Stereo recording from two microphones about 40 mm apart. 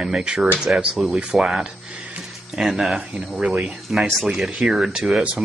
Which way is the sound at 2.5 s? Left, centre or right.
Centre.